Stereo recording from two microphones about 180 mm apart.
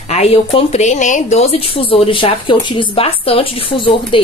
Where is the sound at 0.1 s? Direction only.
35° left (ahead or behind).